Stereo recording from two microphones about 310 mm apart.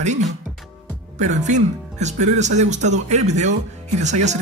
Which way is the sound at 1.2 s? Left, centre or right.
Right.